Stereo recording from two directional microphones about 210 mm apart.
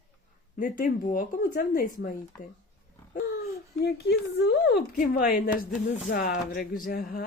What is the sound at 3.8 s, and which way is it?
Speech, 50° left (ahead or behind).